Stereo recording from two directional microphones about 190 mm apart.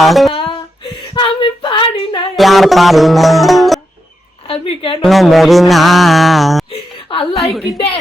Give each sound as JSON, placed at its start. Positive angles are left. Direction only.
{"t": 0.0, "sound": "mantra", "side_deg": 0}
{"t": 0.9, "sound": "female singing", "side_deg": 25}
{"t": 2.3, "sound": "music", "side_deg": 0}
{"t": 4.4, "sound": "a sound", "side_deg": 30}
{"t": 5.0, "sound": "mantra", "side_deg": 0}
{"t": 6.7, "sound": "a sound", "side_deg": 30}
{"t": 7.3, "sound": "mantra", "side_deg": 0}